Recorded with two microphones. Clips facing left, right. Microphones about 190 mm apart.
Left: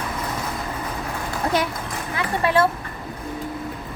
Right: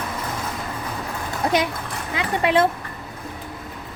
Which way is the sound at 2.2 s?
20° right (ahead or behind).